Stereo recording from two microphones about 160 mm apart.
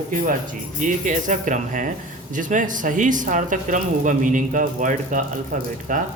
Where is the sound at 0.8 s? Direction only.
50° right (ahead or behind).